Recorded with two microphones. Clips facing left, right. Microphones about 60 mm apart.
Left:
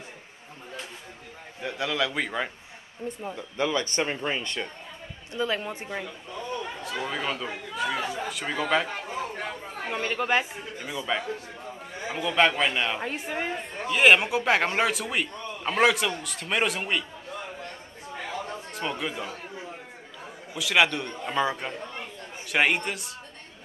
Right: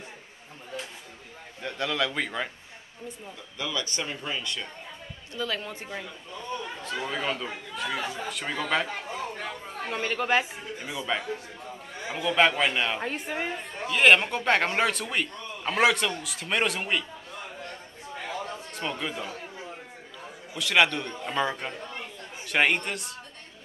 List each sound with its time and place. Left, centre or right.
1.6 s a man's voice: centre
3.5 s speech: left
5.3 s speech: left
6.8 s a man's voice: centre
9.1 s chatter: left
9.8 s a man's voice: centre
18.7 s speech: centre
20.5 s a man's voice: centre